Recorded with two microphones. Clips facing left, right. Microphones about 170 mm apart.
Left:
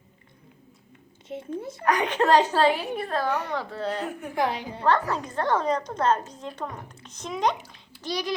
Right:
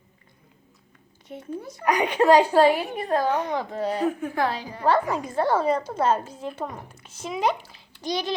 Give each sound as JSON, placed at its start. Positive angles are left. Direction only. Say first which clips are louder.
{"t": 1.3, "sound": "a child's voice", "louder": "left 3 dB", "side_deg": 25}
{"t": 1.8, "sound": "a woman's voice", "louder": "right 2 dB", "side_deg": -10}
{"t": 4.4, "sound": "a woman's voice", "louder": "right 1 dB", "side_deg": 15}
{"t": 4.8, "sound": "a woman's voice", "louder": "right 2 dB", "side_deg": -10}
{"t": 8.0, "sound": "a child's voice", "louder": "right 2 dB", "side_deg": -25}